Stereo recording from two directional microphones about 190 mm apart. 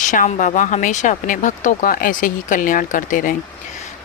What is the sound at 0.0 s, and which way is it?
Speech, 40° left (ahead or behind).